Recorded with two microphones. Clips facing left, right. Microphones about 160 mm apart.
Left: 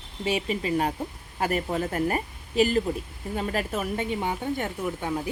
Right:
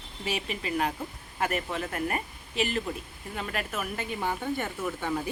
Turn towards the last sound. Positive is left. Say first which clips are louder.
# left 2 dB
turn(degrees=15)  # may be behind; listen again after turning